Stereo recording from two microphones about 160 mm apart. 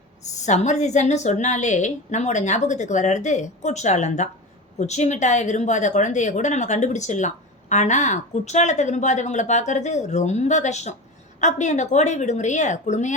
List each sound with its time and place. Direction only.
0.2 s a woman's voice: 45° left (ahead or behind)